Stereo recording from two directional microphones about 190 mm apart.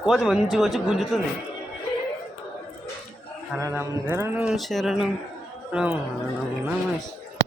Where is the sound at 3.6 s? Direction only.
15° right (ahead or behind).